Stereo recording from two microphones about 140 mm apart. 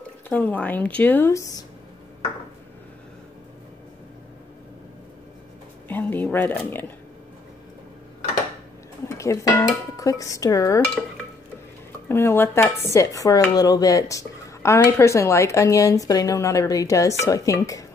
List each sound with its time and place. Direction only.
0.3 s a woman's voice: 10° left (ahead or behind)
5.9 s a woman's voice: 15° left (ahead or behind)
9.1 s speech: 20° left (ahead or behind)
12.1 s speech: 15° left (ahead or behind)